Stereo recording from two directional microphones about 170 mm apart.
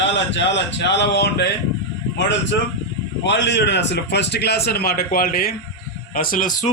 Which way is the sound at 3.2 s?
90° left.